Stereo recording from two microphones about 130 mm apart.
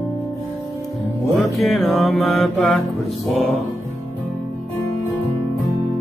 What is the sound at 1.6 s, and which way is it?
Mantra, centre (ahead or behind).